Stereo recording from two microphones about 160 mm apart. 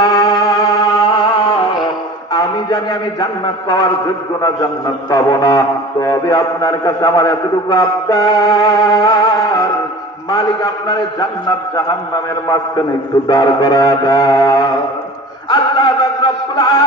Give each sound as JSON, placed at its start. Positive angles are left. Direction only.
{"t": 0.0, "sound": "music", "side_deg": 25}
{"t": 2.3, "sound": "a man's voice", "side_deg": 25}
{"t": 5.1, "sound": "a man's voice", "side_deg": 25}
{"t": 13.3, "sound": "a man's voice", "side_deg": 25}
{"t": 15.5, "sound": "a sound", "side_deg": 30}